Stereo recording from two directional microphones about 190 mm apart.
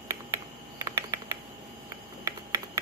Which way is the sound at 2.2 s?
15° right (ahead or behind).